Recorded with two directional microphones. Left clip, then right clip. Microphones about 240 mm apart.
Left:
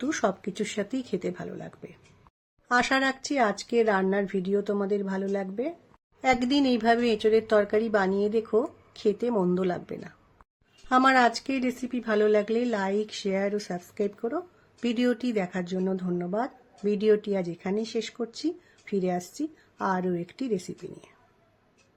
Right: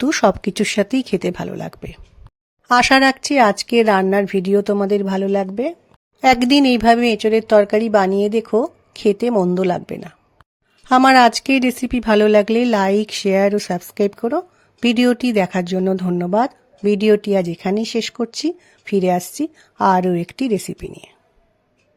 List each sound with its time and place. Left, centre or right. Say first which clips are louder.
0.0 s speech: right 12 dB; right